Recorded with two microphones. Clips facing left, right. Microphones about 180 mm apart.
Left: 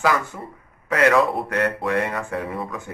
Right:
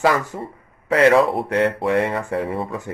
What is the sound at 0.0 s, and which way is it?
Speech, 30° right (ahead or behind).